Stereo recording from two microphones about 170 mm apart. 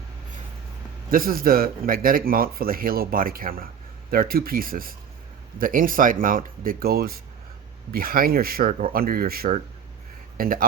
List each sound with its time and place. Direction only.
1.1 s speech: 60° right (ahead or behind)